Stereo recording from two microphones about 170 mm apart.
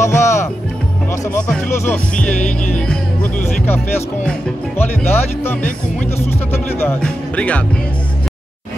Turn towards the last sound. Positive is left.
turn(degrees=5)  # may be behind; listen again after turning